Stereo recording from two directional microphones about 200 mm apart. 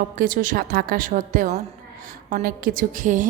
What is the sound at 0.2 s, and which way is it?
A woman's voice, 45° right (ahead or behind).